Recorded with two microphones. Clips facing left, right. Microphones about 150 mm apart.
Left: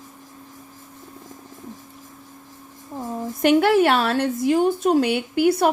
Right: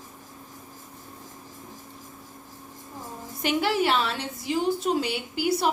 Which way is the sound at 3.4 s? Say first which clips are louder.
Left 8 dB; 55° left (ahead or behind).